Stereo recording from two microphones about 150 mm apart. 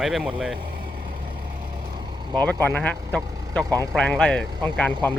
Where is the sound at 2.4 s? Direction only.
10° left (ahead or behind).